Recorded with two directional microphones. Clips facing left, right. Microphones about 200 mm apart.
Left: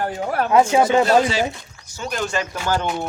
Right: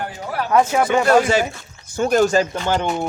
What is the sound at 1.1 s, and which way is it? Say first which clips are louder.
Speech: right 2 dB; 50° right (ahead or behind).